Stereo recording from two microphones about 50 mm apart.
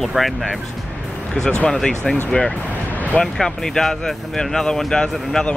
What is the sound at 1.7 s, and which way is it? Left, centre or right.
Speech, centre.